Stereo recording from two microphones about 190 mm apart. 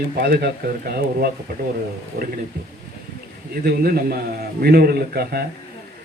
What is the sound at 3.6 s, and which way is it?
Speech, 55° right (ahead or behind).